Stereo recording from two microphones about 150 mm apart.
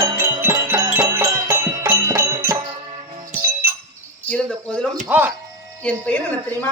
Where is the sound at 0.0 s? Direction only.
20° right (ahead or behind).